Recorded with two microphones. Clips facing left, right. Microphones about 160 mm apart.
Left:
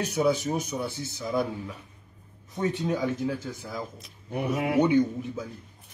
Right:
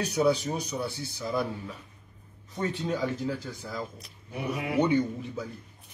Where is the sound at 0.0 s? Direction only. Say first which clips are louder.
Even; 20° left (ahead or behind).